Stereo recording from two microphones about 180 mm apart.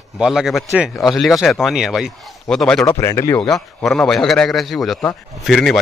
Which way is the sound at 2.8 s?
15° left (ahead or behind).